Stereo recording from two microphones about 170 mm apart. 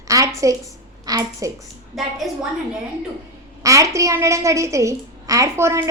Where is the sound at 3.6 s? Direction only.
20° right (ahead or behind).